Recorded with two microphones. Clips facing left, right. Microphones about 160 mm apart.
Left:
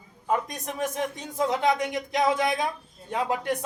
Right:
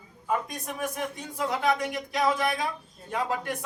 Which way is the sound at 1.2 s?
20° left (ahead or behind).